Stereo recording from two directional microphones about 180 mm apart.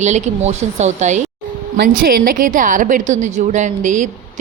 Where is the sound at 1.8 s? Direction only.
55° right (ahead or behind).